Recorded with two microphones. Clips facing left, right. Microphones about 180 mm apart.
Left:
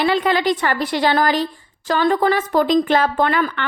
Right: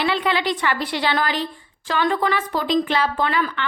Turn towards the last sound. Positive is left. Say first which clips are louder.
# left 4 dB
turn(degrees=50)  # may be behind; listen again after turning